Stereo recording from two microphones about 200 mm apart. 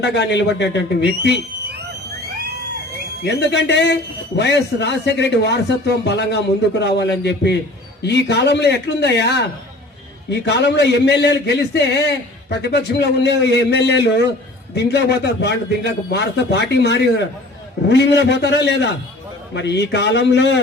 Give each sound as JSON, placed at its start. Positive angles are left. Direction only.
{"t": 0.0, "sound": "a man's voice", "side_deg": 60}
{"t": 3.2, "sound": "a man's voice", "side_deg": 60}